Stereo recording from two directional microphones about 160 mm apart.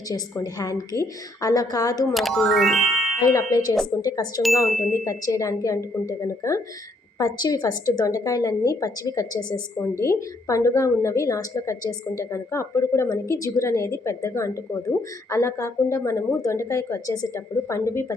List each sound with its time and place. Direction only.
0.1 s a woman's voice: 20° left (ahead or behind)
2.1 s speech: centre (ahead or behind)
3.2 s a woman's voice: 20° left (ahead or behind)